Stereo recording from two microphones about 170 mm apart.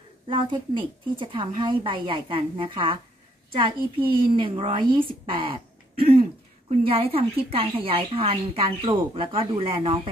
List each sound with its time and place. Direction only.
0.3 s a woman's voice: 30° right (ahead or behind)